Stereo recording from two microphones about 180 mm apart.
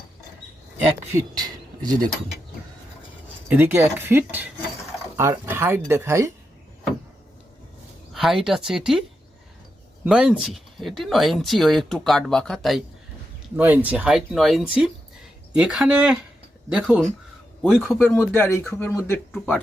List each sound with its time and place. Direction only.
1.1 s speech: 20° right (ahead or behind)
3.5 s speech: 15° right (ahead or behind)
8.1 s speech: centre (ahead or behind)
13.6 s speech: 10° right (ahead or behind); by 19.6 s 10° left (ahead or behind)